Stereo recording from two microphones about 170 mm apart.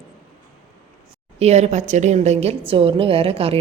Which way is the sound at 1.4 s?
40° right (ahead or behind).